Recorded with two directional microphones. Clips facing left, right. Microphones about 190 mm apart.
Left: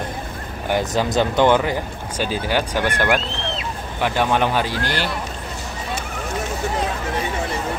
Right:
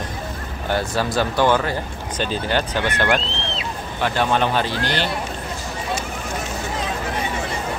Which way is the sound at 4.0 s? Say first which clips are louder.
Left 1 dB; 15° left (ahead or behind).